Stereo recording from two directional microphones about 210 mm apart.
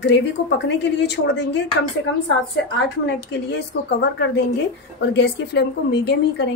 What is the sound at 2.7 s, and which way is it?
A woman's voice, 55° left (ahead or behind).